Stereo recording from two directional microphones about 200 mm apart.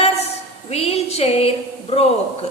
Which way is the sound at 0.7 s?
30° left (ahead or behind).